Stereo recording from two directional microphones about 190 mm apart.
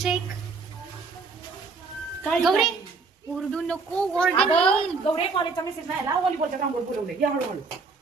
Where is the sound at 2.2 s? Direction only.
5° left (ahead or behind).